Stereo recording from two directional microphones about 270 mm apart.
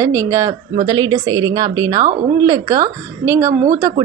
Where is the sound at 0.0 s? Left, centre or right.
Centre.